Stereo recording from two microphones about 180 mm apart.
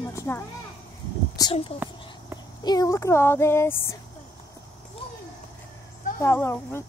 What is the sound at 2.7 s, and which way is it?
A woman's voice, 20° left (ahead or behind).